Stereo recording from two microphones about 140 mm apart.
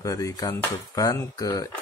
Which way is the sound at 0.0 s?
25° left (ahead or behind).